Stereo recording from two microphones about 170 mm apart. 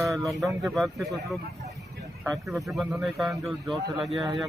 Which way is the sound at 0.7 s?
Centre (ahead or behind).